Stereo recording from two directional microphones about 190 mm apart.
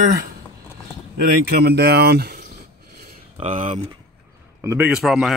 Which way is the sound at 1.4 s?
55° right (ahead or behind).